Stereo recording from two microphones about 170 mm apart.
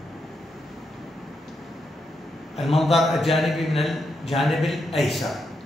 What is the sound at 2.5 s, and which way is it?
A man's voice, centre (ahead or behind).